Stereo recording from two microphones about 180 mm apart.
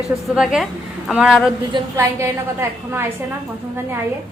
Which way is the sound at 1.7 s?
15° right (ahead or behind).